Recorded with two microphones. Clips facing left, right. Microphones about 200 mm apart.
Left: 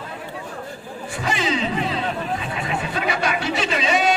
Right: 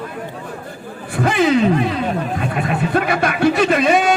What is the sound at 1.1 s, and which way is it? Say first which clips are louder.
Speech: right 9 dB; 55° right (ahead or behind).